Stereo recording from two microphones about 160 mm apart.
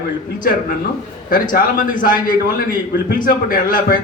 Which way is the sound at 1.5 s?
60° left (ahead or behind).